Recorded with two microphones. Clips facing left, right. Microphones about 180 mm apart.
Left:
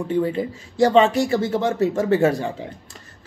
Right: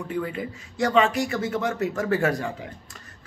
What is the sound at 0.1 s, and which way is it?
Speech, 30° left (ahead or behind).